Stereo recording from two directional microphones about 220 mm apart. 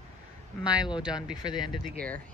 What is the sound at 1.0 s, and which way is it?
Speech, 5° right (ahead or behind).